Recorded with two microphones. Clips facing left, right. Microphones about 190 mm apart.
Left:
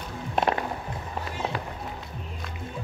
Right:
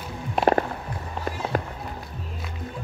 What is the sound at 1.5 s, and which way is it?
Run, 45° right (ahead or behind).